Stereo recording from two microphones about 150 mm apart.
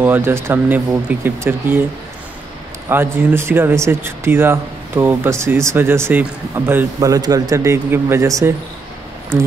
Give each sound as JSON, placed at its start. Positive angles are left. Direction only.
{"t": 0.0, "sound": "speech", "side_deg": -15}
{"t": 2.9, "sound": "speech", "side_deg": -15}